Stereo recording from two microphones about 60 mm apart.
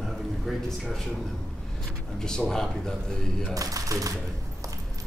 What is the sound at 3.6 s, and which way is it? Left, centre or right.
Speech, right.